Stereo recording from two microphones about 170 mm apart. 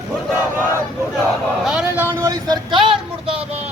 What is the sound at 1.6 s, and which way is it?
Vehicle, 5° right (ahead or behind).